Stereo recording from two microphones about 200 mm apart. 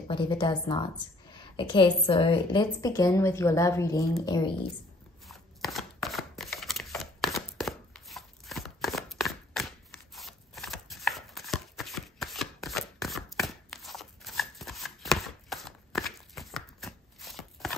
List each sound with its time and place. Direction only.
0.1 s a woman's voice: 25° left (ahead or behind)
5.2 s chopping: centre (ahead or behind)